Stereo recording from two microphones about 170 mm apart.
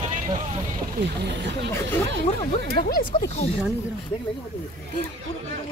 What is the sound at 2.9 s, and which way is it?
Speech, 60° left (ahead or behind).